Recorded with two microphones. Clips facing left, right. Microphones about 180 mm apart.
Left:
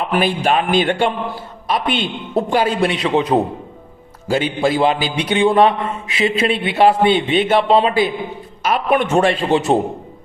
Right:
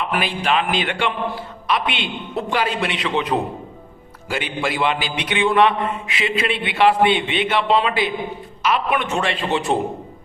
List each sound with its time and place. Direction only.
0.1 s a man's voice: 40° left (ahead or behind)